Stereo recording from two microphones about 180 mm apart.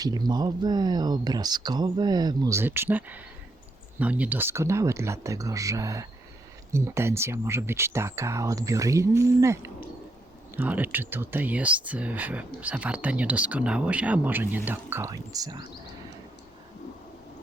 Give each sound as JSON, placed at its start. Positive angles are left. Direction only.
{"t": 0.0, "sound": "speech", "side_deg": -20}